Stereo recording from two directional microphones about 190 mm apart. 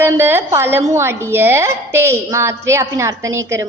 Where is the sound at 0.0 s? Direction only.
10° right (ahead or behind).